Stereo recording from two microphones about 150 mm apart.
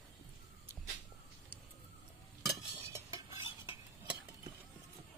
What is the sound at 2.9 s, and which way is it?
Stir, 20° right (ahead or behind).